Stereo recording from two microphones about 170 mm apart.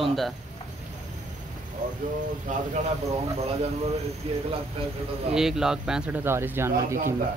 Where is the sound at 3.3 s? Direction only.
35° right (ahead or behind).